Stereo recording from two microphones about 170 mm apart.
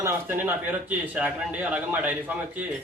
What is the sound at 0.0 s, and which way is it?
A man's voice, 10° right (ahead or behind).